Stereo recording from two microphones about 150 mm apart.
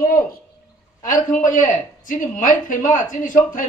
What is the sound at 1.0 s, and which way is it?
Speech, 60° left (ahead or behind).